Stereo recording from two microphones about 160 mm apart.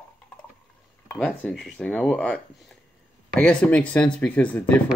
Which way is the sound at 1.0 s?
10° left (ahead or behind).